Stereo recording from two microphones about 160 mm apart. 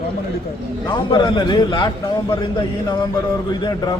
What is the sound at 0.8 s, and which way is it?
A man's voice, 30° left (ahead or behind).